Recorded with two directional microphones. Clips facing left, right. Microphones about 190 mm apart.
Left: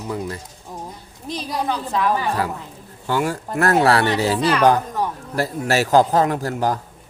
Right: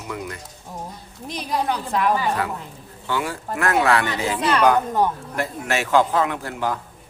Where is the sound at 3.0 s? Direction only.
40° left (ahead or behind).